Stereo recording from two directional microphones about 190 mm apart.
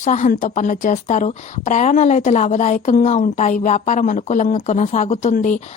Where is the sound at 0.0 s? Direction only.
40° left (ahead or behind).